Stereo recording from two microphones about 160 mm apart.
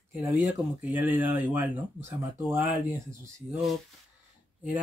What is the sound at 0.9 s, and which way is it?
Speech, 10° right (ahead or behind).